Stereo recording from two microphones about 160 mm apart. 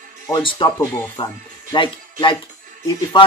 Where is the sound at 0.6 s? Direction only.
30° left (ahead or behind).